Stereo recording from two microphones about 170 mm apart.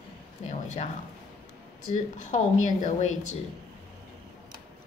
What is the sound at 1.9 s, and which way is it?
Speech, 45° left (ahead or behind).